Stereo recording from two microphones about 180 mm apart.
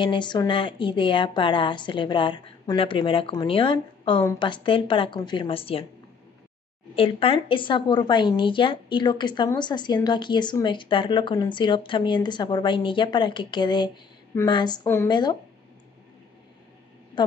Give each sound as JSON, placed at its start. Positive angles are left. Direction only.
{"t": 0.0, "sound": "a woman's voice", "side_deg": 25}
{"t": 7.0, "sound": "a woman's voice", "side_deg": 30}